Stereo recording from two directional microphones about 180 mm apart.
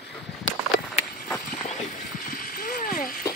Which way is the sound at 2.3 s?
55° left (ahead or behind).